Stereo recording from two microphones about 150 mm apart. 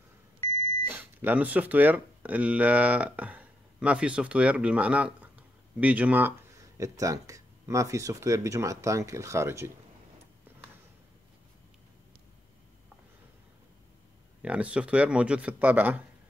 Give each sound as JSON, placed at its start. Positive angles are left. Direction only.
{"t": 0.8, "sound": "speech", "side_deg": -10}
{"t": 14.4, "sound": "speech", "side_deg": -10}